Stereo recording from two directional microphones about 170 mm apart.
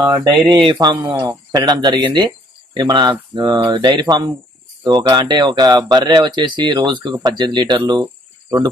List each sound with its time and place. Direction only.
0.7 s speech: 25° right (ahead or behind)